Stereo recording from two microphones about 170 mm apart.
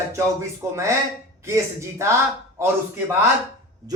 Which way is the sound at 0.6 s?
20° right (ahead or behind).